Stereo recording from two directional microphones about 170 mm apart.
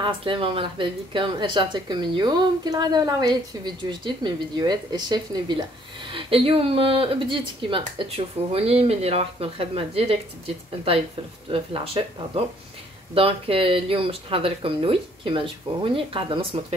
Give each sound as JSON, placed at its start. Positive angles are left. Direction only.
{"t": 0.0, "sound": "a woman's voice", "side_deg": -30}
{"t": 11.4, "sound": "speech", "side_deg": -30}